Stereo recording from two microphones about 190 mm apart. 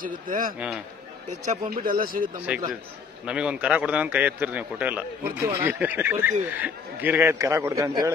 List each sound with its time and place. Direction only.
0.0 s speech: 45° right (ahead or behind)
2.5 s a man's voice: 5° right (ahead or behind)